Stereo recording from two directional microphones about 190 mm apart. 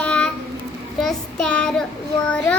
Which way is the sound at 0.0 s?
5° left (ahead or behind).